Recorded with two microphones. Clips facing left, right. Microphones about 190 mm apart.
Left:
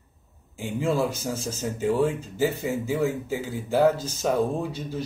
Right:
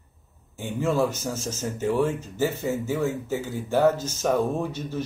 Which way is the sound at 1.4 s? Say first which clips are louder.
Left 1 dB; 10° left (ahead or behind).